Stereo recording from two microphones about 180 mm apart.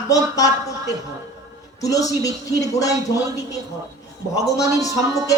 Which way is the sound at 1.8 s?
20° left (ahead or behind).